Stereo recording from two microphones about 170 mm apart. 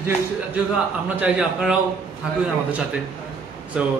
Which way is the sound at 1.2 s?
5° right (ahead or behind).